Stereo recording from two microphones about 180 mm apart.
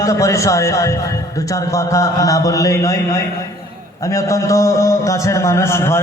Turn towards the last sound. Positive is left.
turn(degrees=15)  # may be behind; listen again after turning